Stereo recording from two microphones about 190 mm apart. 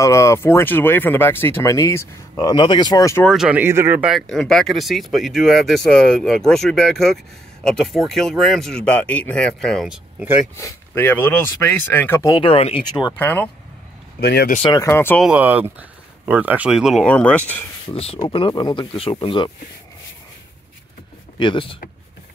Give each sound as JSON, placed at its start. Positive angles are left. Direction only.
{"t": 0.0, "sound": "speech", "side_deg": 15}
{"t": 3.3, "sound": "speech", "side_deg": -5}
{"t": 10.6, "sound": "speech", "side_deg": 10}
{"t": 12.4, "sound": "speech", "side_deg": 30}
{"t": 13.2, "sound": "speech", "side_deg": 10}
{"t": 14.2, "sound": "speech", "side_deg": 55}
{"t": 14.6, "sound": "speech", "side_deg": 20}
{"t": 15.2, "sound": "speech", "side_deg": -10}
{"t": 17.8, "sound": "speech", "side_deg": 30}
{"t": 21.4, "sound": "speech", "side_deg": 25}